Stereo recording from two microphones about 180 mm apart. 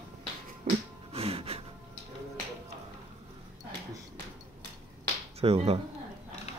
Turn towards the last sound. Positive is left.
turn(degrees=-35)  # may be behind; listen again after turning